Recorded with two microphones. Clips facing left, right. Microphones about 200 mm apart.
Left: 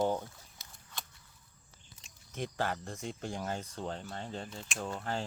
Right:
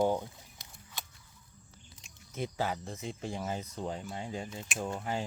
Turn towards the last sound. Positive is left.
turn(degrees=-5)  # may be behind; listen again after turning